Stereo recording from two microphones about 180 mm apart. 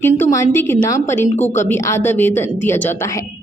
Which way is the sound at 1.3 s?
40° left (ahead or behind).